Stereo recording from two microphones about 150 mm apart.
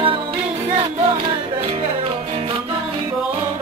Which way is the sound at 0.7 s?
35° right (ahead or behind).